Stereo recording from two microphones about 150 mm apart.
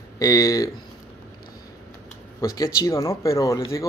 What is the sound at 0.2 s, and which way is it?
Speech, 25° left (ahead or behind).